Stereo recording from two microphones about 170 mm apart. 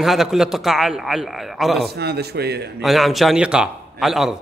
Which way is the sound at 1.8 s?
70° right (ahead or behind).